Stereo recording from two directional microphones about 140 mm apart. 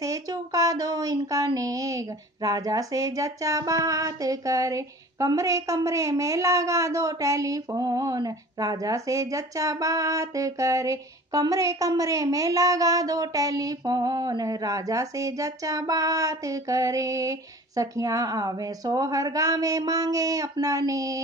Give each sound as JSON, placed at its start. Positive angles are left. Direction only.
{"t": 0.0, "sound": "speech", "side_deg": -25}